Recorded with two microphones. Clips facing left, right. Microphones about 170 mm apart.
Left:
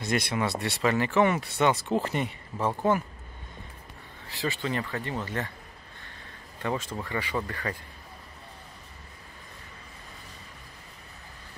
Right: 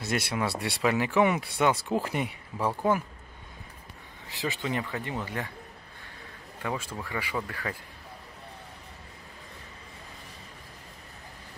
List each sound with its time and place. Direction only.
0.0 s speech: 5° right (ahead or behind)
4.3 s speech: 20° right (ahead or behind)
6.6 s speech: 5° right (ahead or behind)